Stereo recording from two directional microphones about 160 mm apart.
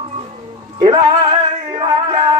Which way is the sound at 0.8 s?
25° right (ahead or behind).